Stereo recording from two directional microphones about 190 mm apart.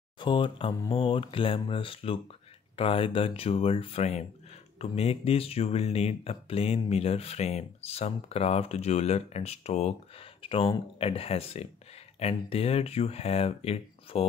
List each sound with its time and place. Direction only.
0.2 s speech: 25° left (ahead or behind)